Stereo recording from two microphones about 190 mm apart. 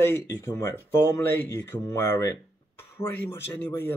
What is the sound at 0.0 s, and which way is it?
A man's voice, 15° left (ahead or behind).